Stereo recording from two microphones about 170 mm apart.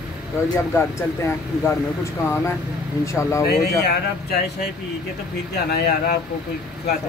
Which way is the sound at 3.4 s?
70° left (ahead or behind).